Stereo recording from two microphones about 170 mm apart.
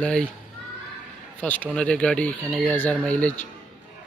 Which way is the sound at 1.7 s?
5° left (ahead or behind).